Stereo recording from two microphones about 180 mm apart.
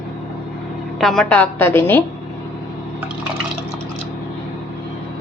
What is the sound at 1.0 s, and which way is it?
A woman's voice, centre (ahead or behind).